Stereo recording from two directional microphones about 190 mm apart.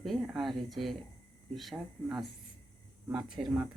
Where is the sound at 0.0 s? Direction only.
Centre (ahead or behind).